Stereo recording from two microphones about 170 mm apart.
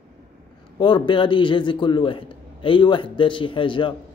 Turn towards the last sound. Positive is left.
turn(degrees=30)  # may be behind; listen again after turning